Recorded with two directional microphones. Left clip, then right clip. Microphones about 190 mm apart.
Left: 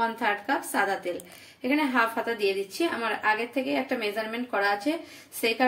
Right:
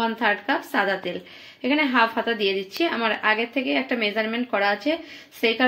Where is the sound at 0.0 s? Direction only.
35° right (ahead or behind).